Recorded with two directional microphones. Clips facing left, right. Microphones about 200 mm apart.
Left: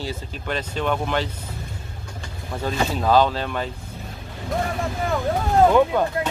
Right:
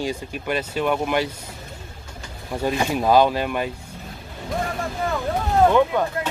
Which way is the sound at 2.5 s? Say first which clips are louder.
Right 2 dB; 15° right (ahead or behind).